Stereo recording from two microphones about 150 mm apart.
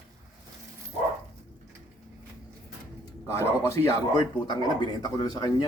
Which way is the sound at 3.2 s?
20° left (ahead or behind).